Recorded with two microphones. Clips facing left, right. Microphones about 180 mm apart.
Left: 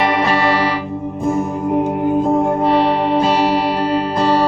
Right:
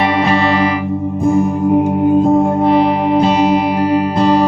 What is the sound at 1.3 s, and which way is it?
Music, 10° right (ahead or behind).